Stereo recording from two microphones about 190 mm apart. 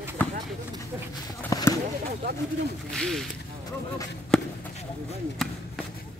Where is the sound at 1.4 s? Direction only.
15° left (ahead or behind).